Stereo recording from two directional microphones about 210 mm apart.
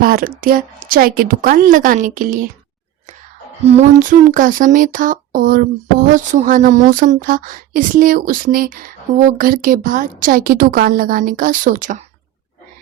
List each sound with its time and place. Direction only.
0.0 s a woman's voice: 45° right (ahead or behind)
3.7 s a woman's voice: 35° right (ahead or behind)